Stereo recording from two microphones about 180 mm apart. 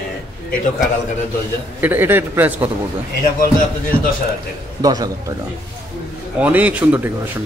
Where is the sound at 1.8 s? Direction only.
10° right (ahead or behind).